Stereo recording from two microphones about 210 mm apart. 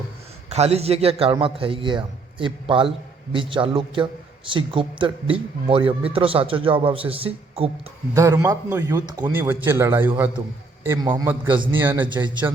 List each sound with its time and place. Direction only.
0.5 s a man's voice: 30° right (ahead or behind)
8.1 s a man's voice: 15° right (ahead or behind)